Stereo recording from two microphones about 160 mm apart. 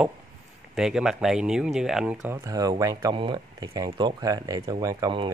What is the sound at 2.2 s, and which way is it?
Speech, 20° right (ahead or behind).